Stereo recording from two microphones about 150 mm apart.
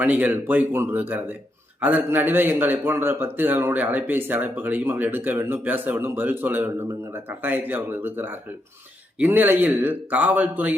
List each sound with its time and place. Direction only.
0.0 s a man's voice: 10° right (ahead or behind)